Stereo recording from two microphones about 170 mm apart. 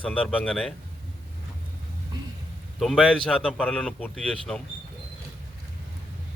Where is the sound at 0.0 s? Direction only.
10° left (ahead or behind).